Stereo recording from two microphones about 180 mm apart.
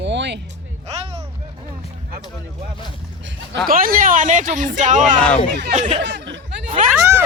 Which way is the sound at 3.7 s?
50° right (ahead or behind).